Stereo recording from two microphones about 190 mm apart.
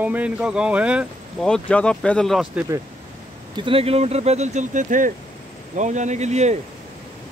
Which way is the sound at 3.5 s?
30° right (ahead or behind).